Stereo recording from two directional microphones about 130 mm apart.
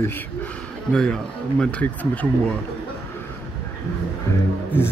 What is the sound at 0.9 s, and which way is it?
Speech, 5° left (ahead or behind).